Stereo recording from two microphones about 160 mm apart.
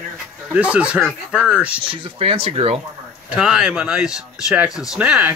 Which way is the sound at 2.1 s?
35° right (ahead or behind).